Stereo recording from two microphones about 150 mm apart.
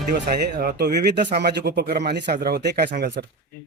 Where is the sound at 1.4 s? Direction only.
90° right.